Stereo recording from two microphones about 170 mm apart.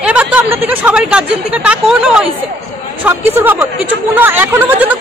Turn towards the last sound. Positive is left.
turn(degrees=-10)  # may be behind; listen again after turning